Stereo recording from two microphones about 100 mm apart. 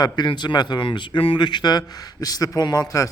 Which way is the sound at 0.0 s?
45° left (ahead or behind).